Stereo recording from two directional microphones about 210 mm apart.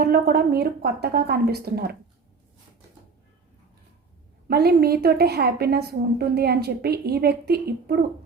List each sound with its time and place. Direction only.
0.0 s a woman's voice: 45° right (ahead or behind)
4.4 s a woman's voice: 50° right (ahead or behind)